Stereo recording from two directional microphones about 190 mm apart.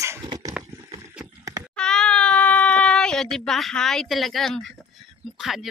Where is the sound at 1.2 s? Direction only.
20° right (ahead or behind).